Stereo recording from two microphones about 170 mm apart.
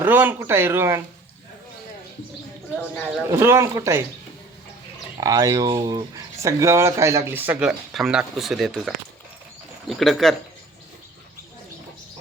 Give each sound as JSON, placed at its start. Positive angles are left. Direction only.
{"t": 0.0, "sound": "speech", "side_deg": -10}
{"t": 3.2, "sound": "speech", "side_deg": -15}
{"t": 5.2, "sound": "speech", "side_deg": -20}